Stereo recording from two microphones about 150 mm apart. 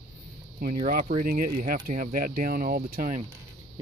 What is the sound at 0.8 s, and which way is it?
Speech, 65° right (ahead or behind).